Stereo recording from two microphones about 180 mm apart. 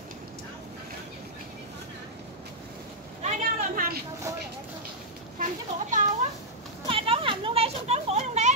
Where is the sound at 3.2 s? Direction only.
50° right (ahead or behind).